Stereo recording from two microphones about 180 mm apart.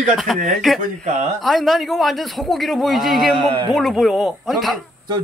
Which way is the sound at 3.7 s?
Centre (ahead or behind).